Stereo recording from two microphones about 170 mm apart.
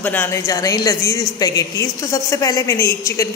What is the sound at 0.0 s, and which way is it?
A woman's voice, 10° left (ahead or behind).